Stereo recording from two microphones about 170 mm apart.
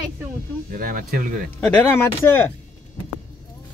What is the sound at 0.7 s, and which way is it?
Speech, 55° right (ahead or behind).